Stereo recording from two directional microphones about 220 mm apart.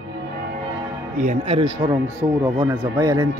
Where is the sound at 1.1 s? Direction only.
30° right (ahead or behind).